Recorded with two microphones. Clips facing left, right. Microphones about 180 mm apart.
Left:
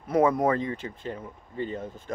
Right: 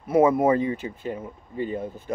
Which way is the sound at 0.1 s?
5° right (ahead or behind).